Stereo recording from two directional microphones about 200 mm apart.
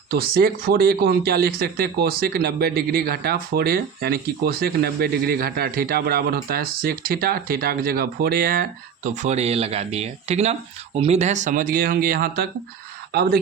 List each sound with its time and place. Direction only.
0.1 s speech: 50° right (ahead or behind)
9.1 s speech: 35° right (ahead or behind); by 13.3 s 55° right (ahead or behind)